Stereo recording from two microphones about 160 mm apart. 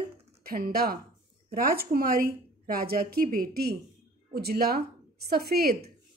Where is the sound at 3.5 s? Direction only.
75° right (ahead or behind).